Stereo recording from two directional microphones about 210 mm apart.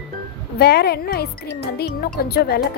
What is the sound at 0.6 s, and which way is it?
Speech, 45° left (ahead or behind).